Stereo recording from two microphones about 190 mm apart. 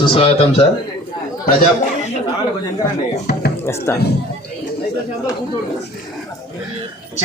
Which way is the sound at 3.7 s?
15° left (ahead or behind).